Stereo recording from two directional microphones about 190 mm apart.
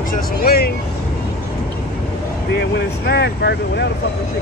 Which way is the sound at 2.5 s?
60° left (ahead or behind).